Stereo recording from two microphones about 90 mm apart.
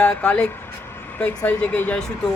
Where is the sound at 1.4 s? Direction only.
15° left (ahead or behind).